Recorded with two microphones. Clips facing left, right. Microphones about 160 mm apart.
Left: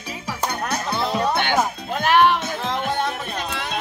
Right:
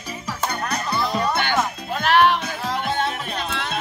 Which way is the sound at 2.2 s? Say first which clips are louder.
Left 1 dB; 20° left (ahead or behind).